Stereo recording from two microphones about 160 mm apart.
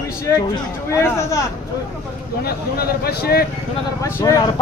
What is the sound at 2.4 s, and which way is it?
A man's voice, 80° left.